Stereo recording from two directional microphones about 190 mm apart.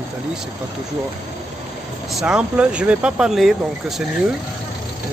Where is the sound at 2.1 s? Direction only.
5° right (ahead or behind).